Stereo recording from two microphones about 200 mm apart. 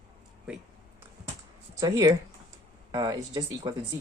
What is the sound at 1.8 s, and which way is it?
Speech, 20° right (ahead or behind).